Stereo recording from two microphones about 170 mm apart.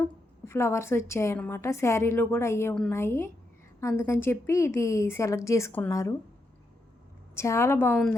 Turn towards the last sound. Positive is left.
turn(degrees=15)  # may be behind; listen again after turning